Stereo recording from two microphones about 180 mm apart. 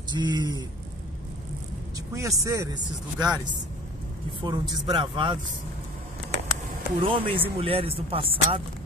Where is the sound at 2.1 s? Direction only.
20° right (ahead or behind).